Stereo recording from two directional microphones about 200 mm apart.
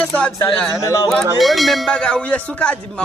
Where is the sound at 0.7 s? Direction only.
15° left (ahead or behind).